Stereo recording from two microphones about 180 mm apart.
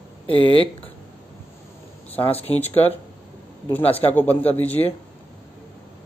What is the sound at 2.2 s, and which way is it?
Speech, 35° left (ahead or behind).